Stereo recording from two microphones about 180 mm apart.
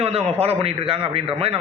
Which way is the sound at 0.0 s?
35° right (ahead or behind).